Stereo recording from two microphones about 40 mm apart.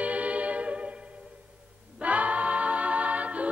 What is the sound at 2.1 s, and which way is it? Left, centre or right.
A capella, right.